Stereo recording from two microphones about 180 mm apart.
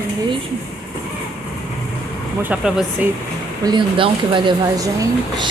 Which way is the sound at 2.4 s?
5° right (ahead or behind).